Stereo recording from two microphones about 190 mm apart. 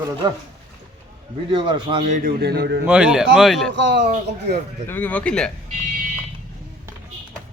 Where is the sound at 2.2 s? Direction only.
55° right (ahead or behind).